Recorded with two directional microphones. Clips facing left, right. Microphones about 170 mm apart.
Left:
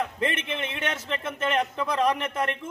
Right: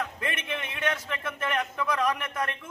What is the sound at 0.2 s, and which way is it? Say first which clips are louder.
A man's voice: left 5 dB; 25° left (ahead or behind).